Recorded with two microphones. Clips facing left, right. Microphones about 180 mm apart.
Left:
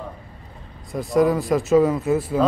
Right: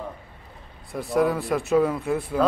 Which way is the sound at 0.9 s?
Centre (ahead or behind).